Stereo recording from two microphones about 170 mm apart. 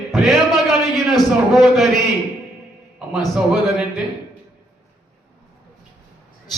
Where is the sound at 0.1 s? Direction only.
Centre (ahead or behind).